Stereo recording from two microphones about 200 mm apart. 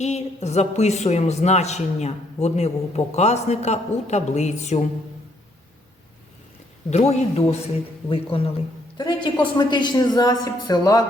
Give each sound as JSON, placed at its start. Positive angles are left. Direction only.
{"t": 0.0, "sound": "a man's voice", "side_deg": 35}
{"t": 6.9, "sound": "a man's voice", "side_deg": 30}